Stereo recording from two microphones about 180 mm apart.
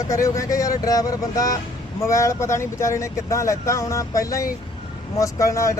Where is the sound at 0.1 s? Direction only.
15° left (ahead or behind).